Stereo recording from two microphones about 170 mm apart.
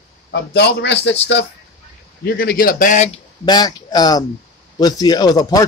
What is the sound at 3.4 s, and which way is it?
Speech, 25° left (ahead or behind).